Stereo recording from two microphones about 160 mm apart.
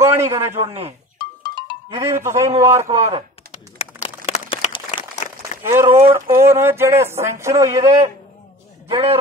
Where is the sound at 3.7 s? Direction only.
40° left (ahead or behind).